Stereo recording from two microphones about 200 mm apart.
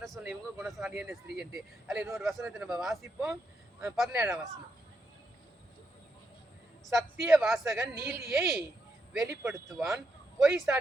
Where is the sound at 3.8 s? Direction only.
Centre (ahead or behind).